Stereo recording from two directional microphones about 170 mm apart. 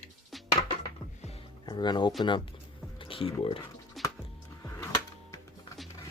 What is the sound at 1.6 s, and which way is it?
Speech, 25° left (ahead or behind).